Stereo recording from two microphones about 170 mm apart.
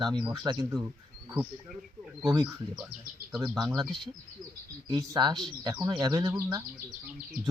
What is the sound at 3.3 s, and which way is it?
Speech, 5° right (ahead or behind).